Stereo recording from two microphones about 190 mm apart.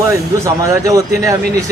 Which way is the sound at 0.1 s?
15° right (ahead or behind).